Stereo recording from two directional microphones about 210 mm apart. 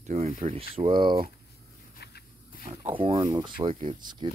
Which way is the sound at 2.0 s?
50° left (ahead or behind).